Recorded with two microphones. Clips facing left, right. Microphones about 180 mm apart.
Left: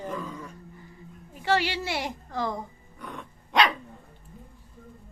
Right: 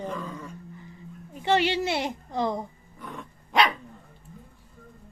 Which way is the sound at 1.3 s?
20° right (ahead or behind).